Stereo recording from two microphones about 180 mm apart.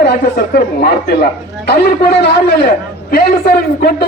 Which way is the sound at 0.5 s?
60° left (ahead or behind).